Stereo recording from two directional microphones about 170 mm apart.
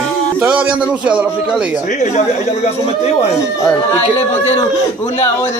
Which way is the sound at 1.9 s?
45° left (ahead or behind).